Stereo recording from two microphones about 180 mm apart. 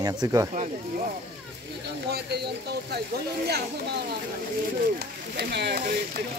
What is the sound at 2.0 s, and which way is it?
Speech, 65° right (ahead or behind).